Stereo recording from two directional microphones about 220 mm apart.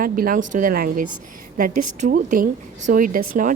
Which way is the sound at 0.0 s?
40° right (ahead or behind).